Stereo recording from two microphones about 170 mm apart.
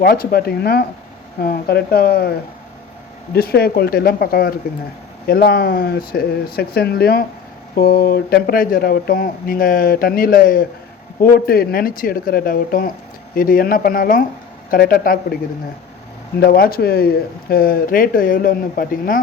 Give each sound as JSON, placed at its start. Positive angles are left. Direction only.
{"t": 0.0, "sound": "speech", "side_deg": 65}
{"t": 3.3, "sound": "speech", "side_deg": 65}
{"t": 16.4, "sound": "speech", "side_deg": 60}